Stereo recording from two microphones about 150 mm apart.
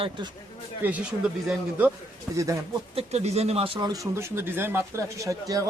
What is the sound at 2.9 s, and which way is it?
Speech, 45° right (ahead or behind).